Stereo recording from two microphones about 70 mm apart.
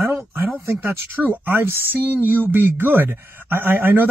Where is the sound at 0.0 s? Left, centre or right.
Right.